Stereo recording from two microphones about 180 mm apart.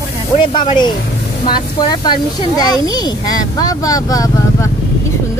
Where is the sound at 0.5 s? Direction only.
25° left (ahead or behind).